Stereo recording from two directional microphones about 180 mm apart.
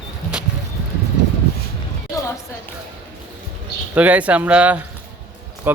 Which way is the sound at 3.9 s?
10° right (ahead or behind).